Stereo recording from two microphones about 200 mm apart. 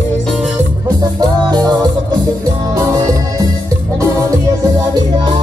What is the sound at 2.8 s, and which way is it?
Music, 15° right (ahead or behind).